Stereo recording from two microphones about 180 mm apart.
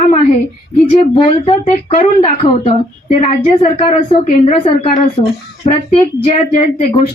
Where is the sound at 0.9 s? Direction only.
35° left (ahead or behind).